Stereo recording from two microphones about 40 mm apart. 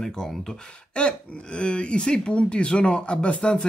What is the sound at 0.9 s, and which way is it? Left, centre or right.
Speech, left.